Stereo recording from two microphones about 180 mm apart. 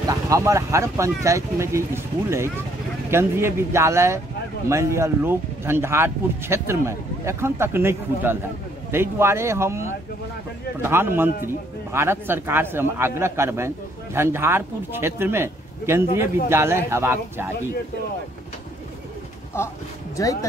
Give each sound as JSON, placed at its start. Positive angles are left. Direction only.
{"t": 0.0, "sound": "speech", "side_deg": -20}
{"t": 19.6, "sound": "speech", "side_deg": 15}